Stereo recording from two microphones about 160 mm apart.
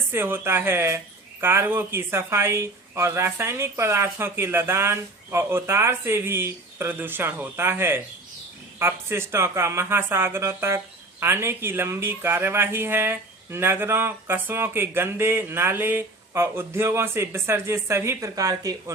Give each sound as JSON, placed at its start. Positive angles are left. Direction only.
{"t": 0.1, "sound": "speech", "side_deg": -15}